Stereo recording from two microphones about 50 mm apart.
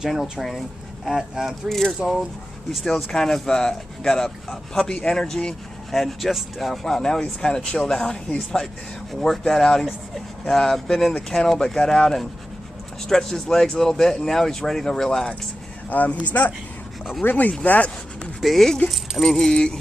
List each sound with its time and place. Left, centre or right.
0.0 s speech: centre
1.7 s speech: centre
9.2 s speech: centre
15.9 s speech: left
17.6 s a sound: left
18.4 s speech: centre